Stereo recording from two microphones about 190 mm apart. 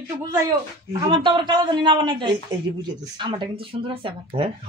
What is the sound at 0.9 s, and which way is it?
A man's voice, 25° right (ahead or behind).